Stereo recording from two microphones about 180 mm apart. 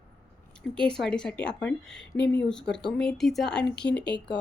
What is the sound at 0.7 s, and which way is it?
A woman's voice, 5° left (ahead or behind).